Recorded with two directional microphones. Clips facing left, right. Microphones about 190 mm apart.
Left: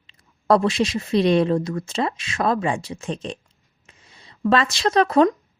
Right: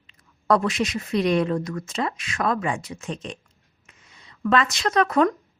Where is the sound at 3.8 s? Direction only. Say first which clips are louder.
Left 2 dB; 30° left (ahead or behind).